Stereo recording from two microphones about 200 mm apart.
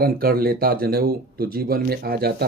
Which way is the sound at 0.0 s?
50° right (ahead or behind).